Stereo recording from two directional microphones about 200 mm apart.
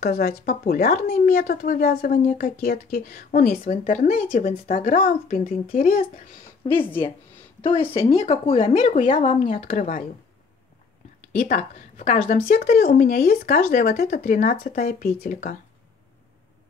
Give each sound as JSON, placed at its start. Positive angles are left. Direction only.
{"t": 0.0, "sound": "speech", "side_deg": 50}
{"t": 6.6, "sound": "speech", "side_deg": 25}
{"t": 11.3, "sound": "speech", "side_deg": 40}